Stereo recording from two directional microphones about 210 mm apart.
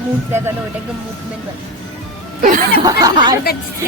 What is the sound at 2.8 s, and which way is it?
Speech, 15° right (ahead or behind).